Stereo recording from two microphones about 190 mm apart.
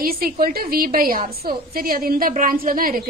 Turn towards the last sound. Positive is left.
turn(degrees=-50)  # may be behind; listen again after turning